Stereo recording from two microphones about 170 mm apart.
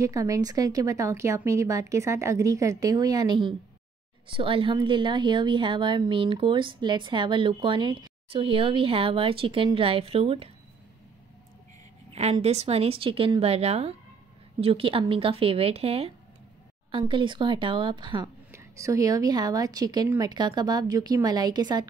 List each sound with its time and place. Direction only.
0.0 s a woman's voice: 20° right (ahead or behind)
12.1 s a woman's voice: 40° right (ahead or behind)